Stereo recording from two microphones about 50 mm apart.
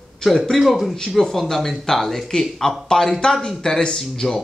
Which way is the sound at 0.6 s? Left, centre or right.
Centre.